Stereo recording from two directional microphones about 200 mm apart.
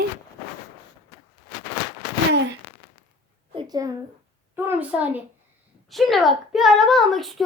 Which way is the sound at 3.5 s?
20° right (ahead or behind).